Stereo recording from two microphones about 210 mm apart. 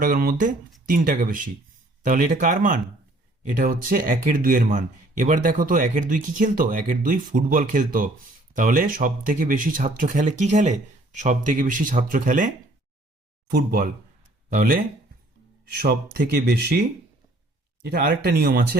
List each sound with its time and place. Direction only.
0.0 s speech: 40° right (ahead or behind)
13.5 s speech: 45° right (ahead or behind)
15.8 s speech: 45° right (ahead or behind)
17.8 s speech: 50° right (ahead or behind)